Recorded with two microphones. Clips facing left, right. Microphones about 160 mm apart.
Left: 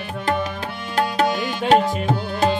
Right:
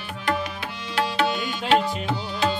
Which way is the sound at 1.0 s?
45° left (ahead or behind).